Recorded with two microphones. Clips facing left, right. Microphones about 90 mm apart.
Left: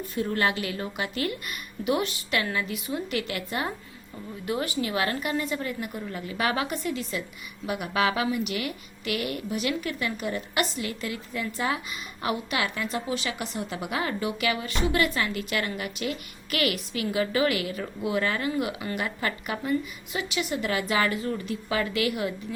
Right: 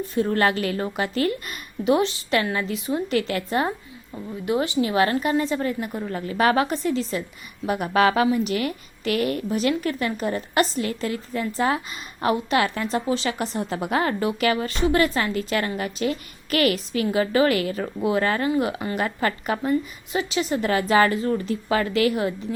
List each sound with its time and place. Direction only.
0.1 s a woman's voice: 40° right (ahead or behind)
4.4 s a woman's voice: 20° right (ahead or behind)